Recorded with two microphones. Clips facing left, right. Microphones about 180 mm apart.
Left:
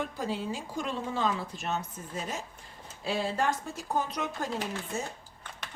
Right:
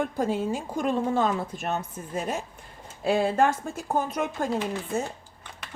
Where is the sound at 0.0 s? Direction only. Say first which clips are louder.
Right 7 dB; 50° right (ahead or behind).